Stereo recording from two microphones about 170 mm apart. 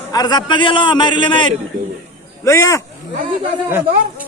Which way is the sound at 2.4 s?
15° left (ahead or behind).